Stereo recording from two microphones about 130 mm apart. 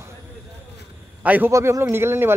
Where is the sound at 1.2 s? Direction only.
10° right (ahead or behind).